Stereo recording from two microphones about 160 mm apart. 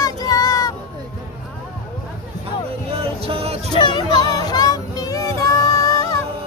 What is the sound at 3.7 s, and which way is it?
Music, 30° left (ahead or behind).